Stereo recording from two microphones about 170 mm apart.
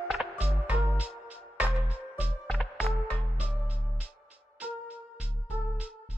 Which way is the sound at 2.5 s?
10° left (ahead or behind).